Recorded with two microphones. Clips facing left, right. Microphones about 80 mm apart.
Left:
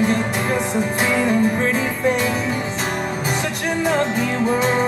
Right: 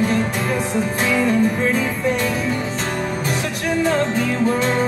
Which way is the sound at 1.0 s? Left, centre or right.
Centre.